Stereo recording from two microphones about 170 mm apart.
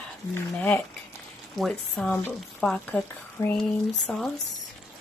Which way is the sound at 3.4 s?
15° left (ahead or behind).